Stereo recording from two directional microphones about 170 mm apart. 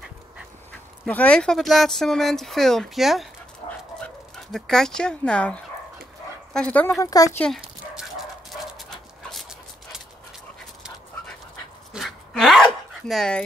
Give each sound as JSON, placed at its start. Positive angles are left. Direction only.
{"t": 1.0, "sound": "speech", "side_deg": 10}
{"t": 3.6, "sound": "dog", "side_deg": 30}
{"t": 4.5, "sound": "speech", "side_deg": 5}
{"t": 7.3, "sound": "dog", "side_deg": 5}
{"t": 11.9, "sound": "dog", "side_deg": 0}
{"t": 13.1, "sound": "speech", "side_deg": 5}